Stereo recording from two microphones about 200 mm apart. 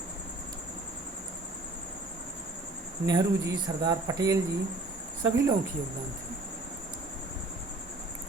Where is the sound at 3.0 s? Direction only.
20° right (ahead or behind).